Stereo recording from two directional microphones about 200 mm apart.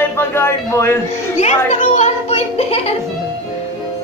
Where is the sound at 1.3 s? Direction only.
35° left (ahead or behind).